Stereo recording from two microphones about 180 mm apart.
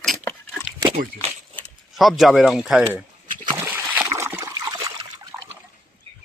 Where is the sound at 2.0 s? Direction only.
Centre (ahead or behind).